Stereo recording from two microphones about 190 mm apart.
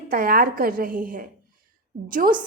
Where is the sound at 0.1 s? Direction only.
50° right (ahead or behind).